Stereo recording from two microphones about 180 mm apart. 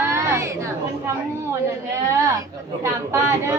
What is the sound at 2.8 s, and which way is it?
Speech, 15° right (ahead or behind).